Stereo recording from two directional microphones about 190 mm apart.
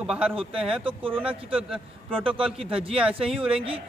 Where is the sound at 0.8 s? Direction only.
30° right (ahead or behind).